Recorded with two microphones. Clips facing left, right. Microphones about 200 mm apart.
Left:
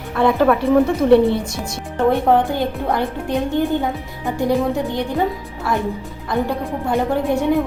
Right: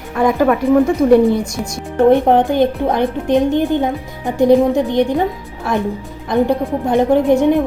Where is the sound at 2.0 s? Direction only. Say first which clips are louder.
Right 4 dB; 20° right (ahead or behind).